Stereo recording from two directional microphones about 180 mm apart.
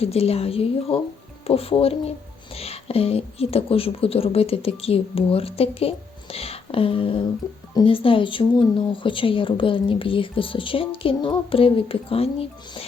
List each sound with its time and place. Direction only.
0.0 s a woman's voice: 35° left (ahead or behind)